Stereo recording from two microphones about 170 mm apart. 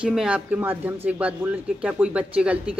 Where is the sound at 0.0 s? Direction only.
5° right (ahead or behind).